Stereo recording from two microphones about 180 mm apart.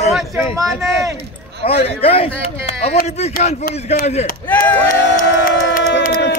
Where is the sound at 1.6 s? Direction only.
35° left (ahead or behind).